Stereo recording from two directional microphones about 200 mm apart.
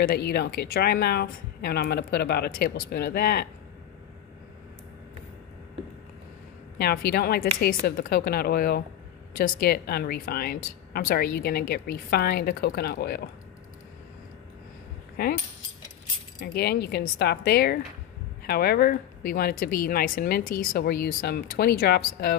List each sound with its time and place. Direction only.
0.0 s speech: 50° left (ahead or behind)
6.8 s speech: 50° left (ahead or behind)
15.2 s speech: 50° left (ahead or behind)
16.3 s speech: 55° left (ahead or behind)